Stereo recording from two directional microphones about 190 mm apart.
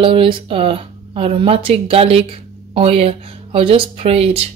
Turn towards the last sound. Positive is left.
turn(degrees=-30)  # may be behind; listen again after turning